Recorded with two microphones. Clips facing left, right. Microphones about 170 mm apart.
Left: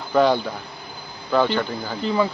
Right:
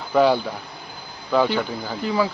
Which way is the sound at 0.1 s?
5° right (ahead or behind).